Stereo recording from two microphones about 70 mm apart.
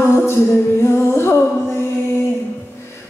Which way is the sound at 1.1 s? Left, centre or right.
Left.